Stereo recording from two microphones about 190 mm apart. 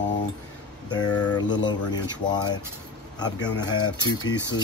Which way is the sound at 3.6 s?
20° left (ahead or behind).